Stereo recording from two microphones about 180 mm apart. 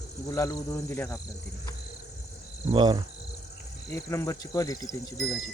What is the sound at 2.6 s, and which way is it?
Speech, 25° right (ahead or behind).